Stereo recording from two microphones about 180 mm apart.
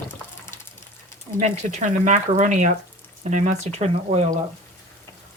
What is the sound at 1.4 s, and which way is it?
Speech, 45° right (ahead or behind).